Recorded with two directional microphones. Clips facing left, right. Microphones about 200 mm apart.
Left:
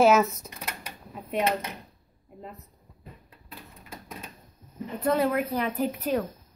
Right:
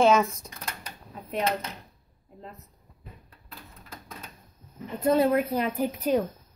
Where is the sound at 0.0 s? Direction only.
5° left (ahead or behind).